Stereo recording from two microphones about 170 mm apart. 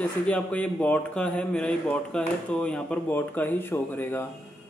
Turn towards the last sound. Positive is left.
turn(degrees=10)  # may be behind; listen again after turning